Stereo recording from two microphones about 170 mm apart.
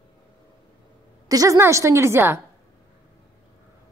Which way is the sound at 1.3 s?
20° right (ahead or behind).